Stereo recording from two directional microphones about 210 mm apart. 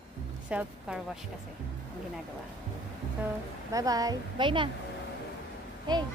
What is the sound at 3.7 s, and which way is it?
Speech, 15° right (ahead or behind).